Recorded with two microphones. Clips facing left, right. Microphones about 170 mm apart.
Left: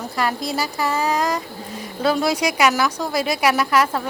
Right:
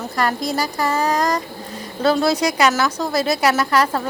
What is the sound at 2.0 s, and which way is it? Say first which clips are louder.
A woman's voice: right 2 dB; 10° left (ahead or behind).